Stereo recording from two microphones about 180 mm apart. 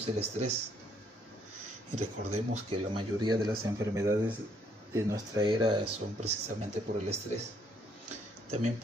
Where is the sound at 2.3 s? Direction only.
30° right (ahead or behind).